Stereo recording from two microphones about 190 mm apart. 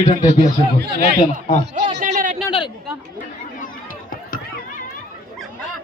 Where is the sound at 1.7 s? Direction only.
40° right (ahead or behind).